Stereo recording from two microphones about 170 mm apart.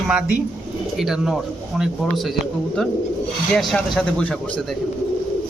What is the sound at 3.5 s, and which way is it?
Speech, 5° left (ahead or behind).